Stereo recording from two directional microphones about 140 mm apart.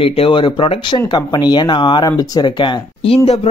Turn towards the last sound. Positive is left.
turn(degrees=45)  # may be behind; listen again after turning